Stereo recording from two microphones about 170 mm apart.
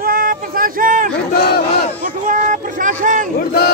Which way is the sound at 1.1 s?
70° left (ahead or behind).